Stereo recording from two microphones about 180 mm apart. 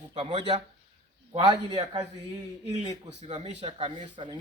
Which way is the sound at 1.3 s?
25° right (ahead or behind).